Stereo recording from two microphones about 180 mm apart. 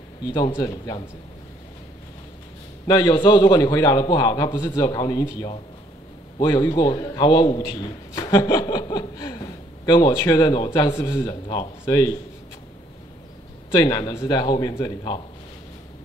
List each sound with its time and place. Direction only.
0.2 s a man's voice: 25° left (ahead or behind)
2.9 s a man's voice: 20° left (ahead or behind)
13.7 s a man's voice: 20° left (ahead or behind)